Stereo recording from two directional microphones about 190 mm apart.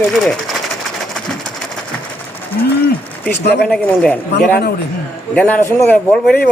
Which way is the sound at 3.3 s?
60° left (ahead or behind).